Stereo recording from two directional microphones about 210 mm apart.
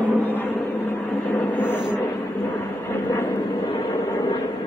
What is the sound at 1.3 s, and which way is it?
Vehicle, 10° left (ahead or behind).